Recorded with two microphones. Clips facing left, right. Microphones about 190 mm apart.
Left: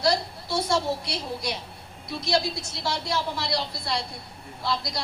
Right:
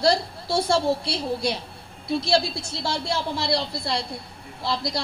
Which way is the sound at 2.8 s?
30° right (ahead or behind).